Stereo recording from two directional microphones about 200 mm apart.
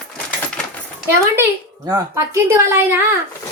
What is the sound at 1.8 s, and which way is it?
A woman's voice, 15° right (ahead or behind).